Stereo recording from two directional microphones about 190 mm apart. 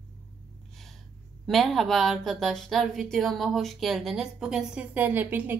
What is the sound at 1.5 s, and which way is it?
A woman's voice, centre (ahead or behind).